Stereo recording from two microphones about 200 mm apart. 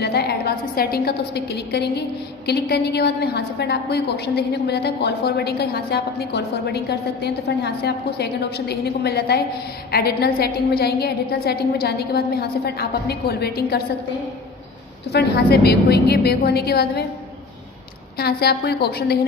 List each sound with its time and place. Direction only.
0.0 s a woman's voice: 50° left (ahead or behind)
15.1 s a woman's voice: 55° left (ahead or behind)
18.1 s a woman's voice: 50° left (ahead or behind)